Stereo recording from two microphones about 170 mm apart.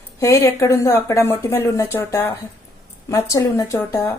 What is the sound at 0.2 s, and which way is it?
A woman's voice, 15° left (ahead or behind).